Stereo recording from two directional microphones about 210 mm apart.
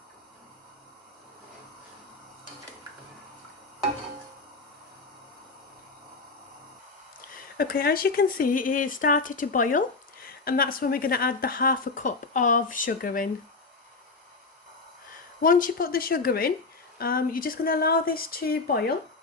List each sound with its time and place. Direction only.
7.5 s speech: 45° left (ahead or behind)
15.4 s speech: 40° left (ahead or behind)